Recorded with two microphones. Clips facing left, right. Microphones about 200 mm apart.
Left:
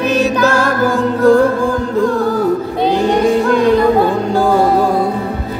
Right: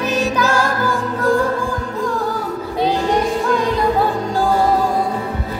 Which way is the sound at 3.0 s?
65° left (ahead or behind).